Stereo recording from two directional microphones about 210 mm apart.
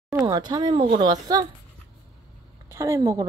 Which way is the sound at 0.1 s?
15° right (ahead or behind).